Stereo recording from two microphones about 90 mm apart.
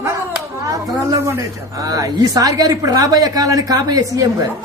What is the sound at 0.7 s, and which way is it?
A woman's voice, 40° right (ahead or behind).